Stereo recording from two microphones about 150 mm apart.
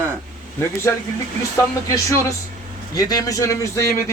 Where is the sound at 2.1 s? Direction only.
20° left (ahead or behind).